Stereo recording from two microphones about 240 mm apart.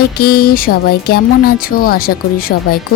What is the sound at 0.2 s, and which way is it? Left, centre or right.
Speech, left.